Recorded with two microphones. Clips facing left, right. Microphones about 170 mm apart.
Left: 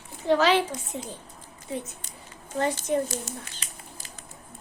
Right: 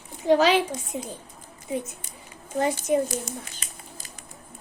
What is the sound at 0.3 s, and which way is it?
A woman's voice, 15° right (ahead or behind).